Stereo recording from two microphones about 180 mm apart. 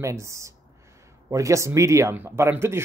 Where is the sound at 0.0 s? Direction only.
15° right (ahead or behind).